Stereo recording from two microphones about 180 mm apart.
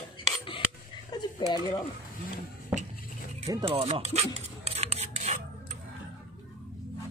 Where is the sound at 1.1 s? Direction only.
25° left (ahead or behind).